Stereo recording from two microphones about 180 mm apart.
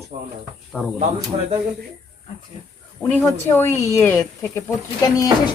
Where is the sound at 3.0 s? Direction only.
10° left (ahead or behind).